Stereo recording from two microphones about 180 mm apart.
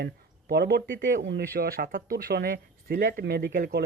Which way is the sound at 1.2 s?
85° right.